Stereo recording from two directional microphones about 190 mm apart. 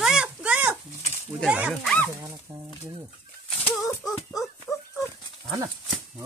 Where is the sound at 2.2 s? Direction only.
15° right (ahead or behind).